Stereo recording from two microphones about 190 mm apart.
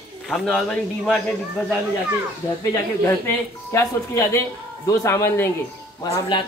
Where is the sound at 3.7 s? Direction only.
15° left (ahead or behind).